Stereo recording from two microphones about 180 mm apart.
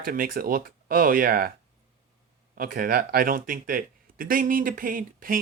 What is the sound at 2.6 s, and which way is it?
Speech, 55° right (ahead or behind).